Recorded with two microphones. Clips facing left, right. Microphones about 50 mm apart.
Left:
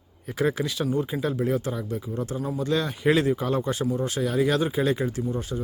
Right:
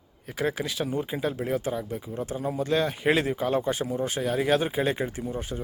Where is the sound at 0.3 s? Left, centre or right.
Centre.